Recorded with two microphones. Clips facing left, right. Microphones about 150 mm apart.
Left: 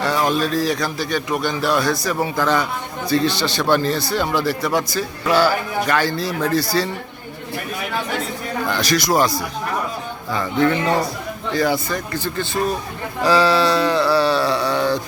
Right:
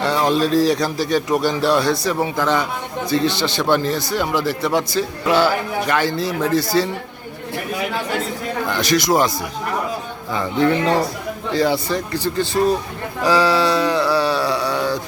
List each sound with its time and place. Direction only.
0.0 s a man's voice: 25° right (ahead or behind)
8.7 s speech: 20° right (ahead or behind)
13.2 s a sound: 15° right (ahead or behind)